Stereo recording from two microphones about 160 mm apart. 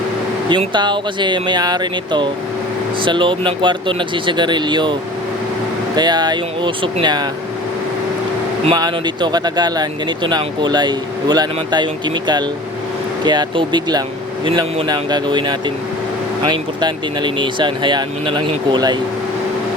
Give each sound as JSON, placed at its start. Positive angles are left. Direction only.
{"t": 0.4, "sound": "speech", "side_deg": -30}
{"t": 6.0, "sound": "speech", "side_deg": -25}
{"t": 8.7, "sound": "speech", "side_deg": -25}